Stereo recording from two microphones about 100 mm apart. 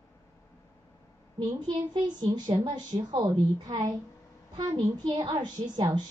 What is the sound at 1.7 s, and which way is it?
A child's voice, 50° right (ahead or behind).